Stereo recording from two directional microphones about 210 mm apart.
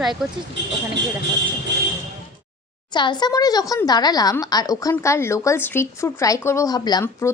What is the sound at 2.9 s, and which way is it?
A woman's voice, 20° left (ahead or behind).